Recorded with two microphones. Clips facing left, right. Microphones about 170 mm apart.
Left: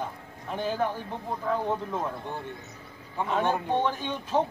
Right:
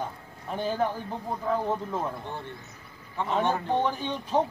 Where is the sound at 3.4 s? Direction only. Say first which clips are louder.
Even; 10° left (ahead or behind).